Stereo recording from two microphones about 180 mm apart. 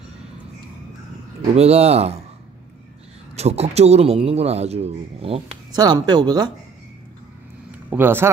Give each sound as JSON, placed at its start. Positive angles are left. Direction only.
{"t": 1.5, "sound": "a man's voice", "side_deg": -35}
{"t": 3.3, "sound": "a man's voice", "side_deg": -35}
{"t": 7.9, "sound": "speech", "side_deg": -10}